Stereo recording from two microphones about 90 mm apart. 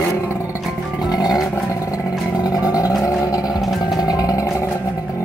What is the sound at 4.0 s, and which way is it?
Music, 40° left (ahead or behind).